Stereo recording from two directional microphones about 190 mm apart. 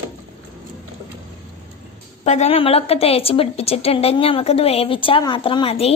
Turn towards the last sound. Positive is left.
turn(degrees=30)  # may be behind; listen again after turning